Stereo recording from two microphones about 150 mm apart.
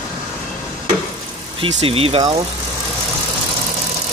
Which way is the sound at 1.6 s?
40° right (ahead or behind).